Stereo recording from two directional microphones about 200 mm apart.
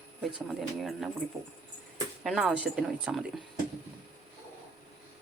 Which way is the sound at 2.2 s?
5° right (ahead or behind).